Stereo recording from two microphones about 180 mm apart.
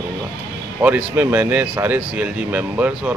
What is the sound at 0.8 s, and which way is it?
Speech, 10° right (ahead or behind).